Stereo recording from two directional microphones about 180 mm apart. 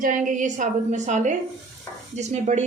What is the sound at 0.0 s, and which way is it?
A woman's voice, 45° right (ahead or behind).